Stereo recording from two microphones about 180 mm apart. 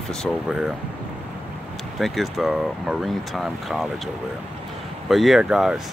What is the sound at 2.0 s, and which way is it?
Speech, centre (ahead or behind).